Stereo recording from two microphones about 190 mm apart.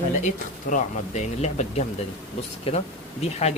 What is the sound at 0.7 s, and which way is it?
Speech, 35° left (ahead or behind).